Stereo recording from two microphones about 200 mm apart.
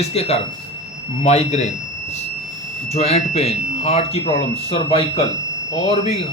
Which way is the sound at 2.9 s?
30° left (ahead or behind).